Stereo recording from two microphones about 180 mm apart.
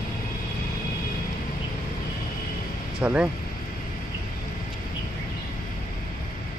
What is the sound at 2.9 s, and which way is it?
Speech, 5° right (ahead or behind).